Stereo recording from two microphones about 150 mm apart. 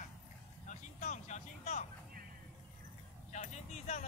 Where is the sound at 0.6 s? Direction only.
55° left (ahead or behind).